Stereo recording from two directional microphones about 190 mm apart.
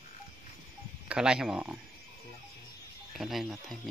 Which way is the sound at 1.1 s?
5° right (ahead or behind).